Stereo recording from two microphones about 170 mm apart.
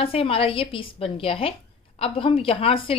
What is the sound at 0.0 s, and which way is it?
A woman's voice, 35° left (ahead or behind).